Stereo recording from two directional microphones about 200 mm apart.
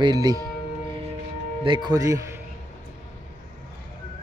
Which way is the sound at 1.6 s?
25° right (ahead or behind).